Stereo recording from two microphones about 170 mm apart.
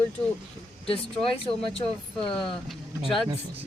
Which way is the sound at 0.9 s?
30° left (ahead or behind).